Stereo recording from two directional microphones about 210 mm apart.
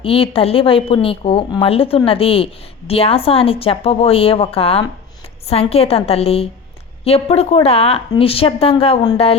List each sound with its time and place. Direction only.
0.0 s a woman's voice: 25° left (ahead or behind)